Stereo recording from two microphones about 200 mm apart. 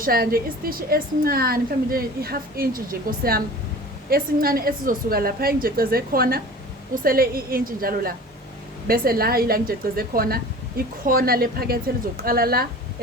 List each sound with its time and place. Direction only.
0.0 s speech: 45° right (ahead or behind)